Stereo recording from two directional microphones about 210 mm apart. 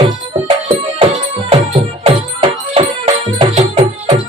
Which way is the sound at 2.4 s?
25° right (ahead or behind).